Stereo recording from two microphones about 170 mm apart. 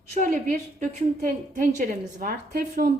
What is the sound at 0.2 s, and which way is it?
A woman's voice, 55° right (ahead or behind).